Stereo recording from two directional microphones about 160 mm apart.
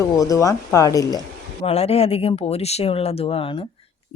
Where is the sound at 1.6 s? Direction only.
40° left (ahead or behind).